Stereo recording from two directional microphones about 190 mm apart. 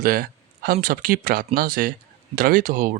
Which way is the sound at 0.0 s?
50° right (ahead or behind).